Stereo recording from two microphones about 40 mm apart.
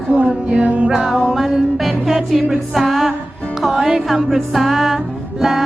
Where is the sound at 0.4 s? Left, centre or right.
Right.